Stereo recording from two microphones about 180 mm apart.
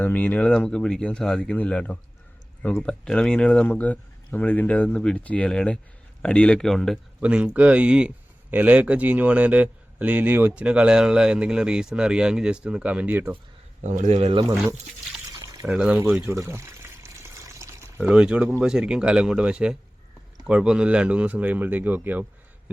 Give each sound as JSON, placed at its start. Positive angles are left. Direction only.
{"t": 0.0, "sound": "speech", "side_deg": 10}
{"t": 13.8, "sound": "speech", "side_deg": -40}
{"t": 15.6, "sound": "speech", "side_deg": -5}
{"t": 16.3, "sound": "pour", "side_deg": -15}
{"t": 18.6, "sound": "speech", "side_deg": -5}